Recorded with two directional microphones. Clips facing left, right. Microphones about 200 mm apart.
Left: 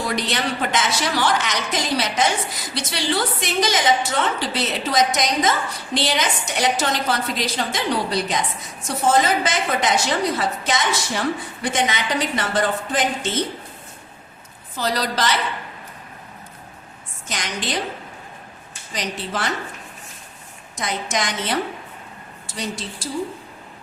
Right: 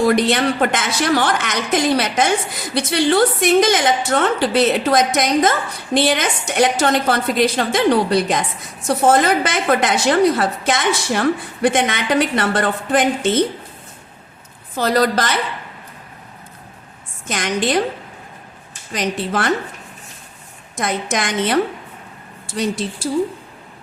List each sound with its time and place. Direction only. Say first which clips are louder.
0.1 s a woman's voice: right 8 dB; 55° right (ahead or behind)
14.8 s a woman's voice: right 6 dB; 55° right (ahead or behind)
17.2 s a woman's voice: right 8 dB; 55° right (ahead or behind)
18.9 s a woman's voice: right 6 dB; 55° right (ahead or behind)
20.7 s a woman's voice: right 4 dB; 55° right (ahead or behind)